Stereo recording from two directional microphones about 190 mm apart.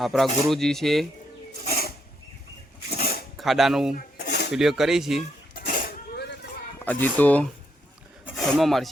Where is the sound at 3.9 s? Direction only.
55° left (ahead or behind).